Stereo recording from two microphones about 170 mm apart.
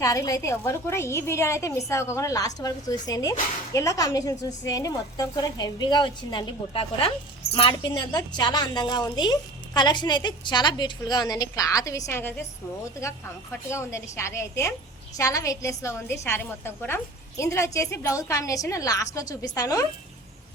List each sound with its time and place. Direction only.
0.0 s a woman's voice: 20° left (ahead or behind)
13.7 s a woman's voice: 15° left (ahead or behind)